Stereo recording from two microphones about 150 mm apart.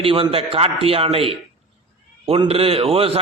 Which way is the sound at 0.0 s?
40° right (ahead or behind).